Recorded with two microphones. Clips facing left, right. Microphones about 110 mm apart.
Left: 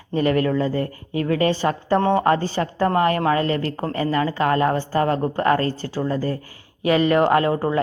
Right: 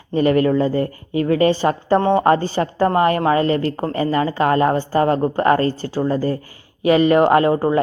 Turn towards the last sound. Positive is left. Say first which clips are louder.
# right 4 dB
turn(degrees=-20)  # may be behind; listen again after turning